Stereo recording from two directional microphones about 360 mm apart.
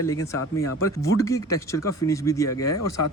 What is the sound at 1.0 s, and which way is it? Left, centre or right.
Speech, centre.